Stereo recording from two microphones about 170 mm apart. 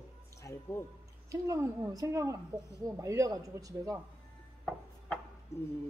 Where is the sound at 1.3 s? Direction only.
20° right (ahead or behind).